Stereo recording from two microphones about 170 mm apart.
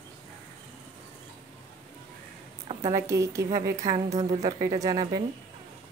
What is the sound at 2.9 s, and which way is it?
Speech, 20° right (ahead or behind).